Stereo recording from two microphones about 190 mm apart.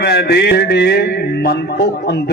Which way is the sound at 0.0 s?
60° left (ahead or behind).